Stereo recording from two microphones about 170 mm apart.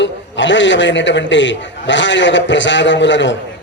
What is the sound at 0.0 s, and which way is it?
A man's voice, 90° left.